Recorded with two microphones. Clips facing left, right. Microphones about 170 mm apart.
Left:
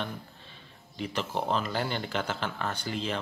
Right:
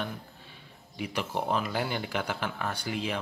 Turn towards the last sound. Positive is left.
turn(degrees=-10)  # may be behind; listen again after turning